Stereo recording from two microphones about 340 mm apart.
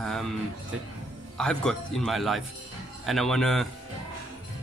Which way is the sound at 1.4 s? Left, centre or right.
Centre.